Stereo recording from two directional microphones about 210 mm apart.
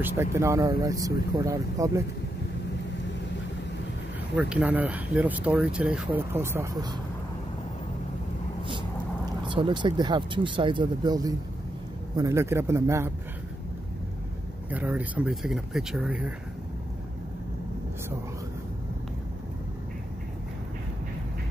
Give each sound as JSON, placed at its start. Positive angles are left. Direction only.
{"t": 0.0, "sound": "speech", "side_deg": -10}
{"t": 4.4, "sound": "speech", "side_deg": -5}
{"t": 9.4, "sound": "speech", "side_deg": -25}
{"t": 14.7, "sound": "speech", "side_deg": -5}